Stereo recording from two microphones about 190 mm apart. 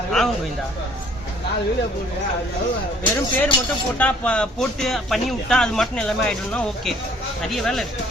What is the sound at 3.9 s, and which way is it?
Speech, 5° left (ahead or behind).